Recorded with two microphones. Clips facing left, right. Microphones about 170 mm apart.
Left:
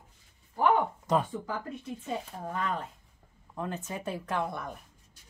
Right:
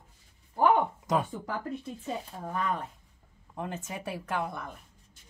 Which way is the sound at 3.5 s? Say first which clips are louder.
Left 1 dB; 15° right (ahead or behind).